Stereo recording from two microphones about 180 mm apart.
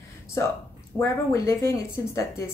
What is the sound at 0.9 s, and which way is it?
A woman's voice, 15° left (ahead or behind).